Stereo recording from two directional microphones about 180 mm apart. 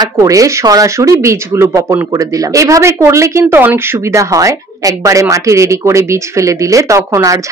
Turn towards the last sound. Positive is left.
turn(degrees=-20)  # may be behind; listen again after turning